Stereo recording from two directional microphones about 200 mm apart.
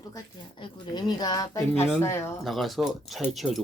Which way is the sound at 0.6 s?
20° left (ahead or behind).